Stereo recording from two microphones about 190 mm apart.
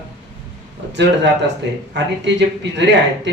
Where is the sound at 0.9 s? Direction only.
65° right (ahead or behind).